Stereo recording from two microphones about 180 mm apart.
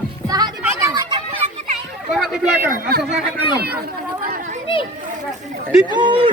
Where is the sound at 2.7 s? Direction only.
55° right (ahead or behind).